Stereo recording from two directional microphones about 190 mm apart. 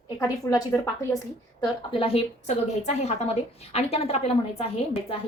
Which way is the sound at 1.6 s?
30° left (ahead or behind).